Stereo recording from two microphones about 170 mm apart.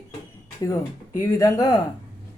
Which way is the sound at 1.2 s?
20° left (ahead or behind).